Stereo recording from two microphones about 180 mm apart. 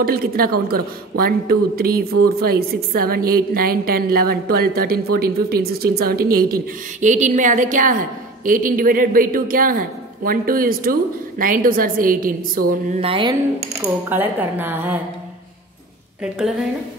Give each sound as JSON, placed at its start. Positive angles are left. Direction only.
{"t": 0.0, "sound": "a woman's voice", "side_deg": -55}
{"t": 13.0, "sound": "speech", "side_deg": -30}
{"t": 14.0, "sound": "a woman's voice", "side_deg": -10}
{"t": 16.2, "sound": "a woman's voice", "side_deg": -5}